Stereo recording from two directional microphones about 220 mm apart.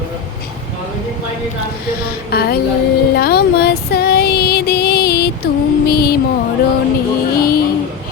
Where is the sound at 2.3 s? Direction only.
45° left (ahead or behind).